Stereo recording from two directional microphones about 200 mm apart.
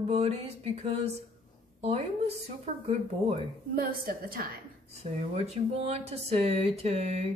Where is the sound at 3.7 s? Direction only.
45° right (ahead or behind).